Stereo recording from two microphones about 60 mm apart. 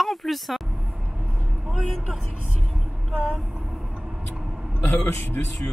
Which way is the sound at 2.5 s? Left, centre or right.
Centre.